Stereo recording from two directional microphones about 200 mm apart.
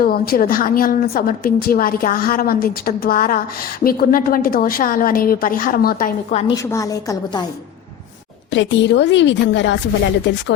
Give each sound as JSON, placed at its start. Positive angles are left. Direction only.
{"t": 0.0, "sound": "a woman's voice", "side_deg": 50}
{"t": 6.3, "sound": "a woman's voice", "side_deg": 30}
{"t": 6.7, "sound": "a woman's voice", "side_deg": 15}
{"t": 8.5, "sound": "a woman's voice", "side_deg": 65}